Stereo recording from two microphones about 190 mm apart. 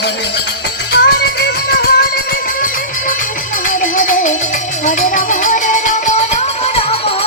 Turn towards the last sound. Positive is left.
turn(degrees=30)  # may be behind; listen again after turning